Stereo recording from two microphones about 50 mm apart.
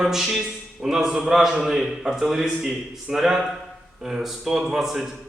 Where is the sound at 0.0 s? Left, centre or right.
Centre.